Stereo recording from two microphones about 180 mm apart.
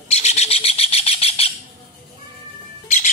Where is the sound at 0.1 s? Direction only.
35° left (ahead or behind).